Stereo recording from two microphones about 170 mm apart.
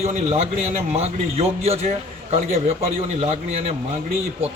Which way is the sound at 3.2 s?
40° right (ahead or behind).